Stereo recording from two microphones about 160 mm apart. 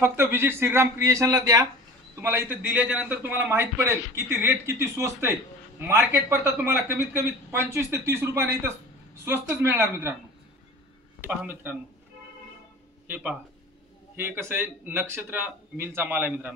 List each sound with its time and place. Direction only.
0.0 s a man's voice: 15° right (ahead or behind)
11.1 s a man's voice: 10° right (ahead or behind)
13.0 s a man's voice: 10° right (ahead or behind)